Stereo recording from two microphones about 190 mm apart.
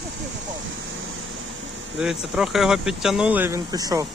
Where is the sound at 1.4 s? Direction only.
85° right.